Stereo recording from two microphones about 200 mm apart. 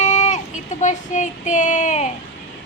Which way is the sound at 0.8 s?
35° left (ahead or behind).